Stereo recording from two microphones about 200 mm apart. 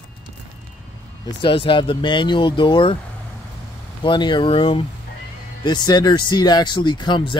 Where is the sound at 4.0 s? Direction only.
20° left (ahead or behind).